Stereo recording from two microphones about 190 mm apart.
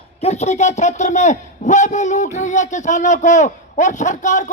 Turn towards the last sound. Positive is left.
turn(degrees=40)  # may be behind; listen again after turning